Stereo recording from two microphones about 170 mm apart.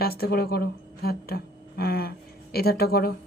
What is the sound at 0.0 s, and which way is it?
Speech, 65° left (ahead or behind).